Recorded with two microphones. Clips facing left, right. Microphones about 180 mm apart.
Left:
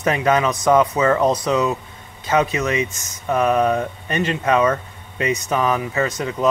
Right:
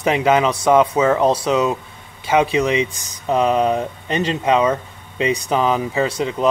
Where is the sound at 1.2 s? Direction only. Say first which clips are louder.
Right 2 dB; 25° right (ahead or behind).